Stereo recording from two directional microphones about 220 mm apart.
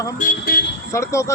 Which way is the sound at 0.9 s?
15° left (ahead or behind).